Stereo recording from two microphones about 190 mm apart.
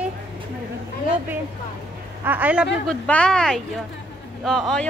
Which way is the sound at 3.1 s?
5° left (ahead or behind).